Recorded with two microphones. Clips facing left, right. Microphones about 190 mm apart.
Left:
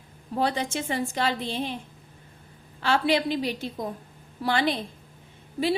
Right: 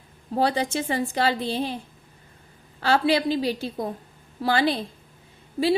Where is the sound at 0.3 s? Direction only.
35° right (ahead or behind).